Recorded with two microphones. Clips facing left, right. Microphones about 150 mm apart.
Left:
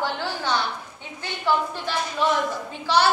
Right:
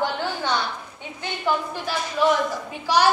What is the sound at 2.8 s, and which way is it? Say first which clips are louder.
Speech: right 1 dB; 15° right (ahead or behind).